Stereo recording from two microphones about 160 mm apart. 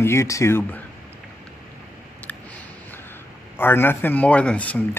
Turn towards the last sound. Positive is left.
turn(degrees=10)  # may be behind; listen again after turning